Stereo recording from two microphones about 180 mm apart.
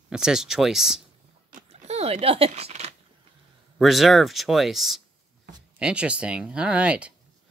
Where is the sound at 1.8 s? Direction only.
35° right (ahead or behind).